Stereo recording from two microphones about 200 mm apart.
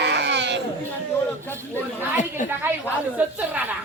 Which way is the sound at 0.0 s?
60° right (ahead or behind).